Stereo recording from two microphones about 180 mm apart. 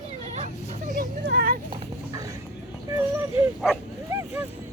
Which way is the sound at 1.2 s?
60° right (ahead or behind).